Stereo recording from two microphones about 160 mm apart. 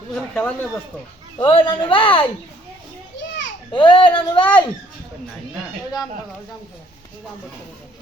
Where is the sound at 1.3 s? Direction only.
30° left (ahead or behind).